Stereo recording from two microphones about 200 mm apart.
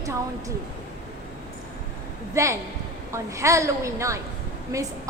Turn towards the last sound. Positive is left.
turn(degrees=-15)  # may be behind; listen again after turning